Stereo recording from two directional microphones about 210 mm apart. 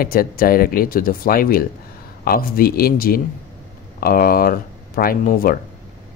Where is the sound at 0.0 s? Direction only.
45° left (ahead or behind).